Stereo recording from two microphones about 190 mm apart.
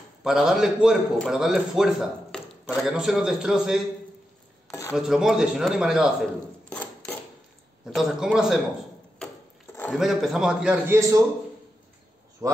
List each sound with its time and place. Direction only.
0.2 s a man's voice: centre (ahead or behind)
4.6 s cutlery: 15° left (ahead or behind)
4.9 s a man's voice: 5° right (ahead or behind)
6.7 s a sound: 10° left (ahead or behind)
7.8 s a man's voice: centre (ahead or behind)
9.8 s a man's voice: centre (ahead or behind)
12.4 s speech: 20° right (ahead or behind)